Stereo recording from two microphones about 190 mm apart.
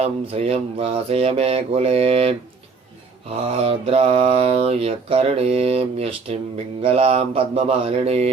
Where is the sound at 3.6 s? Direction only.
30° right (ahead or behind).